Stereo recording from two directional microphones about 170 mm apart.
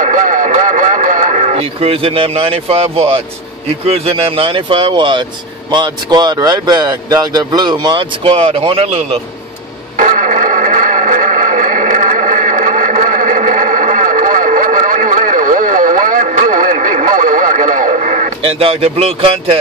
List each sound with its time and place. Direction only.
0.0 s radio: 50° right (ahead or behind)
3.8 s speech: 35° right (ahead or behind)
9.9 s music: 50° right (ahead or behind); by 19.6 s 35° right (ahead or behind)